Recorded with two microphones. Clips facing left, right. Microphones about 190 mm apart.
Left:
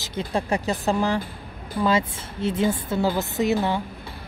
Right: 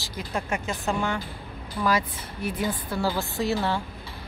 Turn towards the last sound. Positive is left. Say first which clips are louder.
# left 4 dB
turn(degrees=20)  # may be behind; listen again after turning